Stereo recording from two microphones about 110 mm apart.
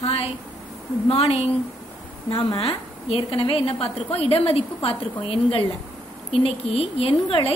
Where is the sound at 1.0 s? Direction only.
70° left (ahead or behind).